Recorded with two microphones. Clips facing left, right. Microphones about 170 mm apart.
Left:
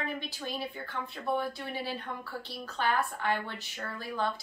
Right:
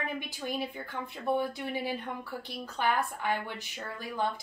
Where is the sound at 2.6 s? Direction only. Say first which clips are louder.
Even; 15° right (ahead or behind).